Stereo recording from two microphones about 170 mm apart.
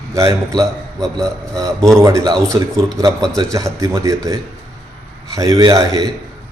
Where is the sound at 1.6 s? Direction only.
20° right (ahead or behind).